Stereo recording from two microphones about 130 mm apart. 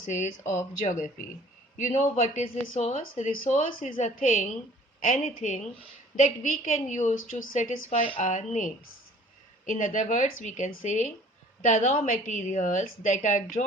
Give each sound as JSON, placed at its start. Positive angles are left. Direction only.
{"t": 0.0, "sound": "speech", "side_deg": 65}
{"t": 1.8, "sound": "a woman's voice", "side_deg": 60}
{"t": 6.1, "sound": "speech", "side_deg": 75}
{"t": 9.6, "sound": "speech", "side_deg": 85}